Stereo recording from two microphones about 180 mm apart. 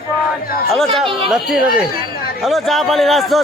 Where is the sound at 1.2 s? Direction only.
Centre (ahead or behind).